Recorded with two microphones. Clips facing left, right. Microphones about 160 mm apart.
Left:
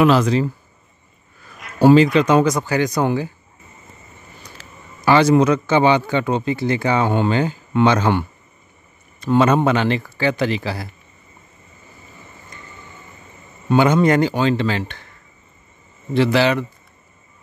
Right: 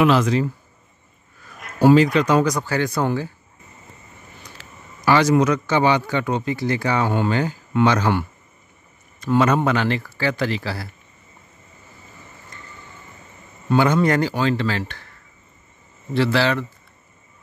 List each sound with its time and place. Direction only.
0.0 s speech: 35° left (ahead or behind)
1.8 s speech: 25° left (ahead or behind)
5.0 s speech: 25° left (ahead or behind)
13.7 s speech: 20° left (ahead or behind)
16.1 s speech: 15° left (ahead or behind)